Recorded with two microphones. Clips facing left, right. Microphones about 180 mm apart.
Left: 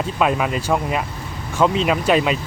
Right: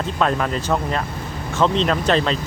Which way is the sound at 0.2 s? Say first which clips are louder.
Left 1 dB; 10° left (ahead or behind).